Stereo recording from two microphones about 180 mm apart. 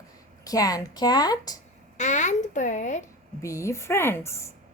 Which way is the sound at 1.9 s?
40° left (ahead or behind).